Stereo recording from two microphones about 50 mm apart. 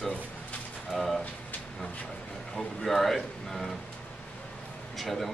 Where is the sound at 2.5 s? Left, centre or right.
Centre.